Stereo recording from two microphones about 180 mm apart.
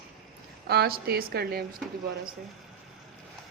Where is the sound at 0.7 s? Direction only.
60° right (ahead or behind).